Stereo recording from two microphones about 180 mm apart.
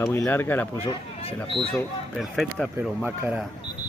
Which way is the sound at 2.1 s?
Centre (ahead or behind).